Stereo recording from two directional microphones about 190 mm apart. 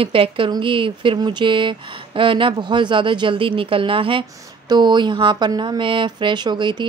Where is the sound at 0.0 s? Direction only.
30° right (ahead or behind).